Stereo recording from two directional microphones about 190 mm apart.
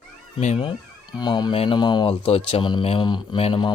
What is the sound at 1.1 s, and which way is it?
Speech, 20° left (ahead or behind).